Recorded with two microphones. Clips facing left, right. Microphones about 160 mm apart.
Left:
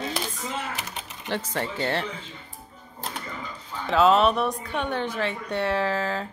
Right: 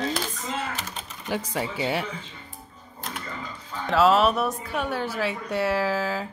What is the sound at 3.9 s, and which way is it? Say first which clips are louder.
Speech: even; centre (ahead or behind).